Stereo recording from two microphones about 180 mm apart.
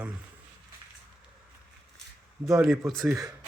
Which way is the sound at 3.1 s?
20° right (ahead or behind).